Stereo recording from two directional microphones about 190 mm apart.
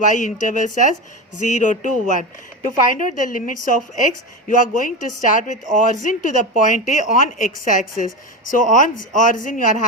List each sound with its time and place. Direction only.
0.1 s a woman's voice: 40° left (ahead or behind)